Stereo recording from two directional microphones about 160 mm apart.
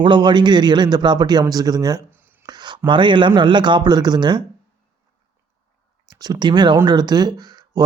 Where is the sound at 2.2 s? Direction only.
15° right (ahead or behind).